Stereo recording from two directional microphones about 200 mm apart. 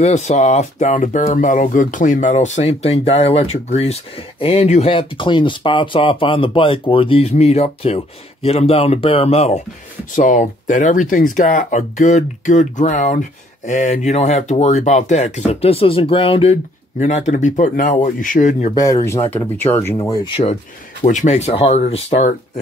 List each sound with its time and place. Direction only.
0.0 s speech: 35° left (ahead or behind)
18.8 s speech: 15° left (ahead or behind)
20.2 s speech: 25° left (ahead or behind)
21.0 s speech: 35° left (ahead or behind)